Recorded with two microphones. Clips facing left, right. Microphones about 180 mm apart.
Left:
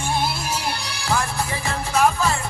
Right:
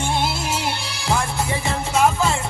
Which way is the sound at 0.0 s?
25° right (ahead or behind).